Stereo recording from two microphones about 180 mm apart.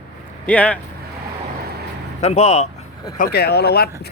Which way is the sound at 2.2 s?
35° left (ahead or behind).